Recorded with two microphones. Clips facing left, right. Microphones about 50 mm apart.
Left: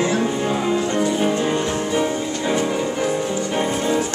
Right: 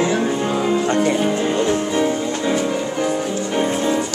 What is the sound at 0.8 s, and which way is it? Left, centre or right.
Music, right.